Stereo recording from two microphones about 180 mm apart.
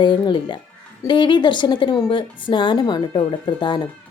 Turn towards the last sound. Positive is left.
turn(degrees=25)  # may be behind; listen again after turning